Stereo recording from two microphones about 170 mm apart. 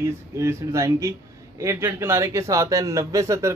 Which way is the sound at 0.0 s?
15° right (ahead or behind).